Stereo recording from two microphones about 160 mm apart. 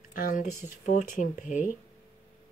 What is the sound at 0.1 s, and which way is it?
Speech, 60° left (ahead or behind).